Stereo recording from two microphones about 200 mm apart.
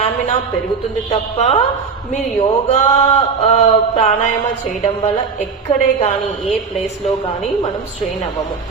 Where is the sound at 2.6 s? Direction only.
35° left (ahead or behind).